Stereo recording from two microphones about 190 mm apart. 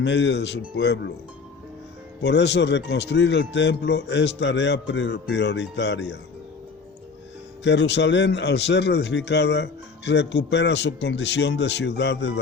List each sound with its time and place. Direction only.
0.0 s speech: 70° left (ahead or behind)
2.2 s speech: 65° left (ahead or behind)
7.6 s speech: 65° left (ahead or behind)